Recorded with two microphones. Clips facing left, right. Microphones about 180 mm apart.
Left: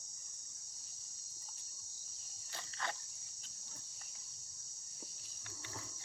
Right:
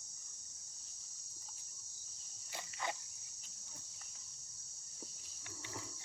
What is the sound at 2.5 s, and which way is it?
Cricket, 10° right (ahead or behind).